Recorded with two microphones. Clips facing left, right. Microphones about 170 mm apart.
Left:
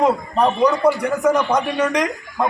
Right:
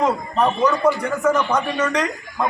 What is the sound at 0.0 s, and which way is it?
A man's voice, 15° left (ahead or behind).